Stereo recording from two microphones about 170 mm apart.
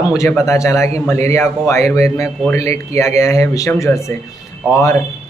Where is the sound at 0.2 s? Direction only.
15° left (ahead or behind).